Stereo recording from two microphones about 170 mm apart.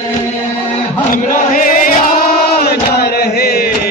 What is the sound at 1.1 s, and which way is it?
Chant, 50° left (ahead or behind).